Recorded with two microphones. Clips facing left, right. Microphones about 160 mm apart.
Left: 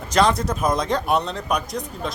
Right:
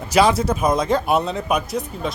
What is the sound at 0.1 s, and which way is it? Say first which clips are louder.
Speech: right 3 dB; 5° right (ahead or behind).